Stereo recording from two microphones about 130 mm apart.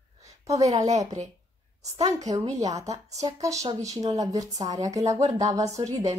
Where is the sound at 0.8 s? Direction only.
65° right (ahead or behind).